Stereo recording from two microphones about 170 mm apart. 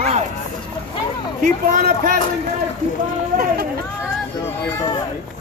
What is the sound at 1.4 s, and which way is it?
Speech, 60° right (ahead or behind).